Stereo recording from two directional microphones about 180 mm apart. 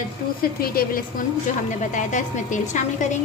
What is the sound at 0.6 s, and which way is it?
Speech, 55° left (ahead or behind).